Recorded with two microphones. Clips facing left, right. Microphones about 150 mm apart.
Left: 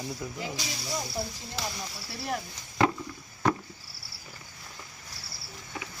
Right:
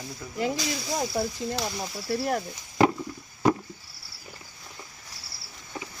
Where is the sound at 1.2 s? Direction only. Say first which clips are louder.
Right 8 dB; 60° right (ahead or behind).